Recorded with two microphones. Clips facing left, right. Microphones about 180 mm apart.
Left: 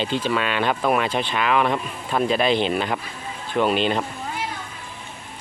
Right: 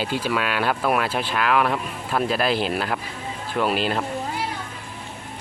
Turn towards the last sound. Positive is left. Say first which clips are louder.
# left 2 dB
turn(degrees=-5)  # may be behind; listen again after turning